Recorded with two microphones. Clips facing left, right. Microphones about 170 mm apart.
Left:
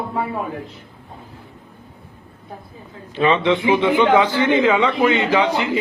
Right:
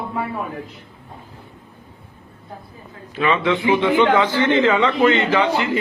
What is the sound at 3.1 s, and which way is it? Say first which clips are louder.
A man's voice: left 2 dB; 30° left (ahead or behind).